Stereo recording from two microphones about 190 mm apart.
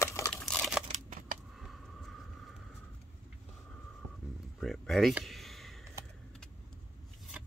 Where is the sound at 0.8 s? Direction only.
40° right (ahead or behind).